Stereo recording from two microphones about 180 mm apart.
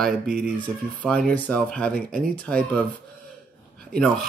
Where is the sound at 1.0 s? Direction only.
5° left (ahead or behind).